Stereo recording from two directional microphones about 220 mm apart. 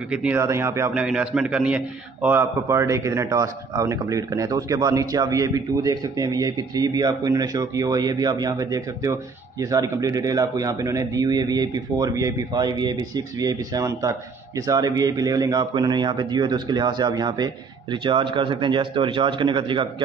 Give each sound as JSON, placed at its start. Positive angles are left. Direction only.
{"t": 0.1, "sound": "a man's voice", "side_deg": -5}